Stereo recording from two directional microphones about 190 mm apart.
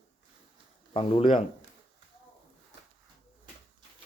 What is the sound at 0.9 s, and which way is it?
Speech, 30° left (ahead or behind).